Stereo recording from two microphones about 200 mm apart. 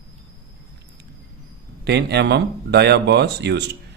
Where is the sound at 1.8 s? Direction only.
55° right (ahead or behind).